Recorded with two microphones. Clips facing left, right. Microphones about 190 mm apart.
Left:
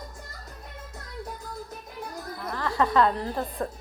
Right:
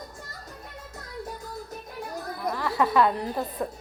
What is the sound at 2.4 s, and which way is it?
A woman's voice, 10° right (ahead or behind).